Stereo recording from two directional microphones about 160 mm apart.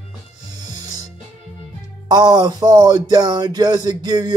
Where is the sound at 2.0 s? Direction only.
25° right (ahead or behind).